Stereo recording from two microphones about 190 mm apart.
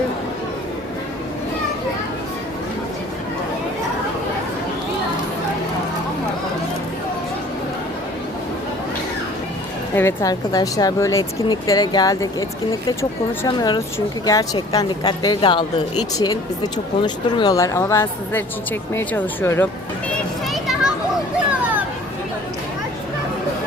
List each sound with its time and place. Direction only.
9.9 s a woman's voice: 10° left (ahead or behind)
20.5 s children playing: centre (ahead or behind)